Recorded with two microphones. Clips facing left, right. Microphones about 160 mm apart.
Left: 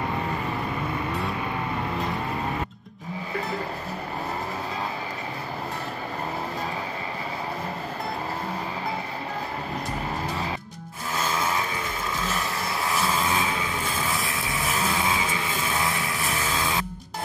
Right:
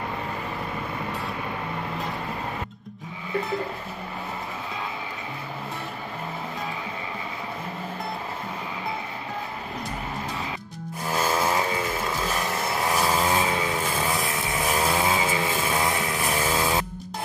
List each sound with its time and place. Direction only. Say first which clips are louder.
11.3 s music: right 2 dB; 30° right (ahead or behind)
13.1 s vehicle: right 2 dB; 35° right (ahead or behind)
13.9 s a sound: right 2 dB; 15° right (ahead or behind)
14.7 s vehicle: right 3 dB; 30° right (ahead or behind)
16.4 s music: right 4 dB; 30° right (ahead or behind)